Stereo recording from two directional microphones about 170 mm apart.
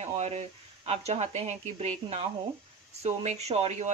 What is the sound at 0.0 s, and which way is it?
Speech, 40° right (ahead or behind).